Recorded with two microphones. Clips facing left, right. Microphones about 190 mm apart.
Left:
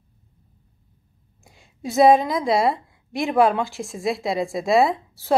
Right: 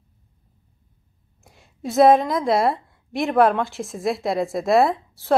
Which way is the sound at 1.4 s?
Centre (ahead or behind).